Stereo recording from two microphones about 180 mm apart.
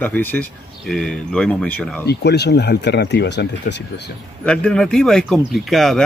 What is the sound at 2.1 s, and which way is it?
Speech, 70° left (ahead or behind).